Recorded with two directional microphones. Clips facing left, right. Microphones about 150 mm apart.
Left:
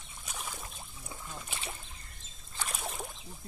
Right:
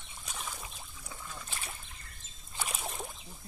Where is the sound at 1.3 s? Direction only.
25° left (ahead or behind).